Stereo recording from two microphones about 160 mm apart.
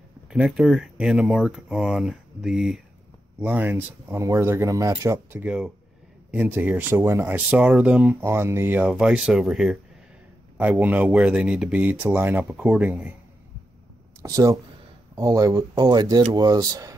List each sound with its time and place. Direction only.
0.3 s speech: centre (ahead or behind)
8.2 s speech: 15° right (ahead or behind)
14.2 s speech: 20° right (ahead or behind)